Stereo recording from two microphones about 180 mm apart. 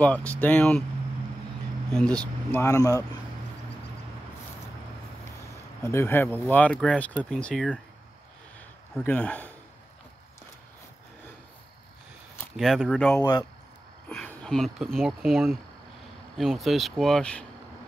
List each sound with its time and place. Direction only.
0.0 s speech: 10° left (ahead or behind)
1.9 s speech: 5° left (ahead or behind)
2.5 s speech: 15° left (ahead or behind)
5.9 s speech: 15° left (ahead or behind)
9.0 s speech: 5° left (ahead or behind)
12.5 s speech: centre (ahead or behind)